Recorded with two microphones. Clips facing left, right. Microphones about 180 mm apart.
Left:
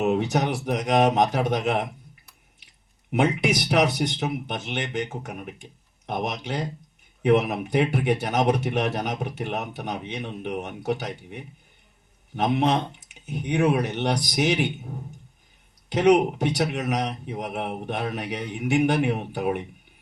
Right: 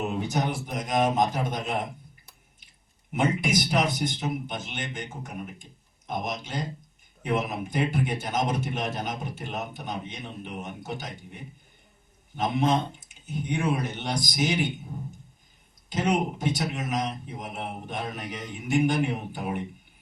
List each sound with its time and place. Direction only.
0.0 s a man's voice: 70° left (ahead or behind)
3.1 s a man's voice: 70° left (ahead or behind)
15.9 s a man's voice: 65° left (ahead or behind)